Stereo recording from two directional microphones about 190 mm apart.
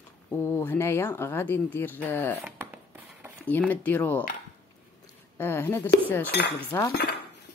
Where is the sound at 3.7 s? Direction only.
10° left (ahead or behind).